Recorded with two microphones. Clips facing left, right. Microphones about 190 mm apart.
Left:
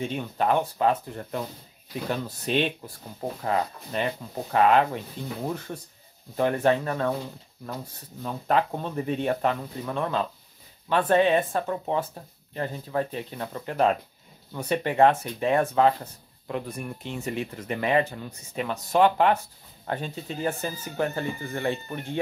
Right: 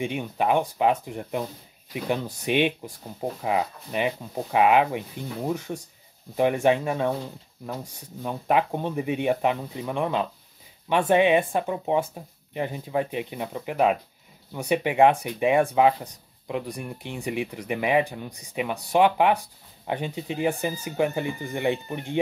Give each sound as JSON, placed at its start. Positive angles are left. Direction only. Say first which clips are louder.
{"t": 0.0, "sound": "speech", "louder": "right 1 dB", "side_deg": -15}